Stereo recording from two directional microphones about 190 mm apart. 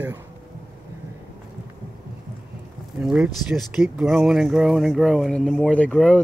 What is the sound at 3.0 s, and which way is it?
Speech, 5° right (ahead or behind).